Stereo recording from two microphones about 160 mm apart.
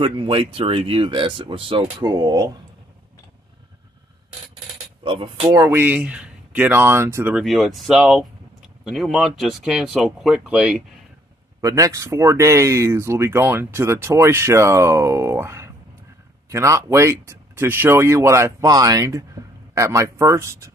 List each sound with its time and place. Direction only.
0.0 s speech: 35° right (ahead or behind)
5.0 s speech: 35° right (ahead or behind)
5.5 s speech: 15° right (ahead or behind)
7.3 s speech: centre (ahead or behind)
11.6 s speech: 20° right (ahead or behind)